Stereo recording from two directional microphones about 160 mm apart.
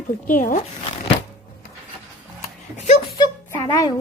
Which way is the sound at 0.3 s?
55° left (ahead or behind).